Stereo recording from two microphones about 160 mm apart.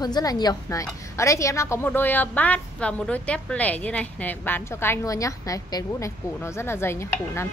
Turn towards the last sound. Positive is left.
turn(degrees=15)  # may be behind; listen again after turning